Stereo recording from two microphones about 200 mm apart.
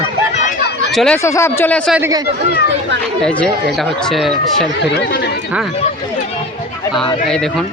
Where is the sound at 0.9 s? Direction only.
Centre (ahead or behind).